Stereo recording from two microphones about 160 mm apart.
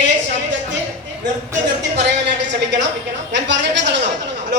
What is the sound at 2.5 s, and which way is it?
A man's voice, 90° right.